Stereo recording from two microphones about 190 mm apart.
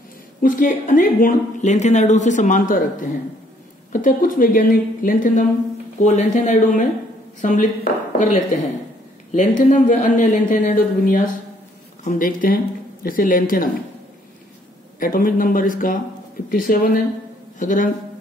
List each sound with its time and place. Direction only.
0.4 s speech: 45° left (ahead or behind)
15.0 s speech: 50° left (ahead or behind)